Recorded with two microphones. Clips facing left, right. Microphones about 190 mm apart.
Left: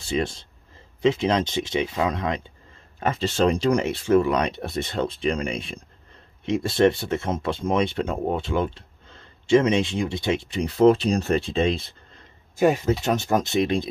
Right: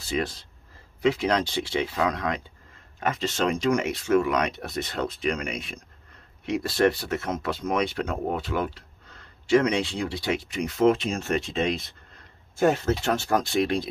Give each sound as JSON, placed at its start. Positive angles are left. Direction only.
{"t": 0.0, "sound": "speech", "side_deg": 25}
{"t": 12.5, "sound": "speech", "side_deg": 15}